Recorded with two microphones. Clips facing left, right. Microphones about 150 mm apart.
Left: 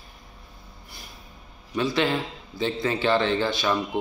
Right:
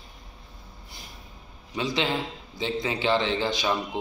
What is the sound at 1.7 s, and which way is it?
Speech, 20° right (ahead or behind).